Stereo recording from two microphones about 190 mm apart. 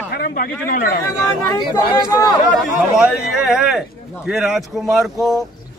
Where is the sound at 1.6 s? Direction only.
20° left (ahead or behind).